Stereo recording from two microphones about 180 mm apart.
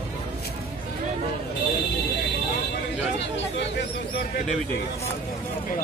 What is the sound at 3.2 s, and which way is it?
Speech, 75° left (ahead or behind).